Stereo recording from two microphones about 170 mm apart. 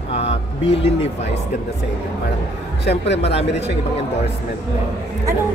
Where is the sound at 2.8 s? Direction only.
85° left.